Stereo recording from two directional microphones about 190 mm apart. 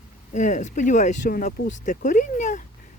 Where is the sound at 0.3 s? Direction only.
40° left (ahead or behind).